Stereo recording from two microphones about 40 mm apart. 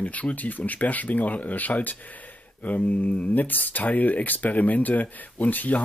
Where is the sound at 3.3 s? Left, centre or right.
Left.